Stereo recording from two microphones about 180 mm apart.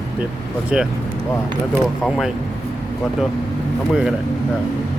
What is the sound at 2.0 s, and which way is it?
Speech, centre (ahead or behind).